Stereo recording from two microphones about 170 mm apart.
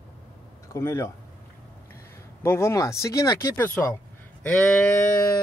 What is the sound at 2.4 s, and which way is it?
Speech, 15° left (ahead or behind).